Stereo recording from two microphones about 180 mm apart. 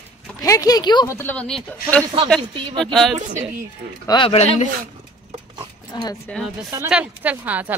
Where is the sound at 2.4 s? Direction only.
25° right (ahead or behind).